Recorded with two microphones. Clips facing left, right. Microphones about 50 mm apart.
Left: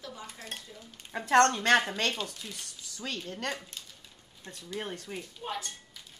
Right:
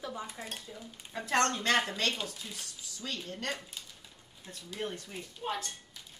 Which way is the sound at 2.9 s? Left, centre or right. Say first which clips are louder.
Left 2 dB; left.